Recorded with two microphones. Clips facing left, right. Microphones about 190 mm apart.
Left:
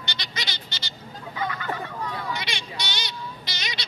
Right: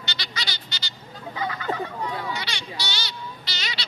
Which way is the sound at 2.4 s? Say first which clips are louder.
Even; 20° left (ahead or behind).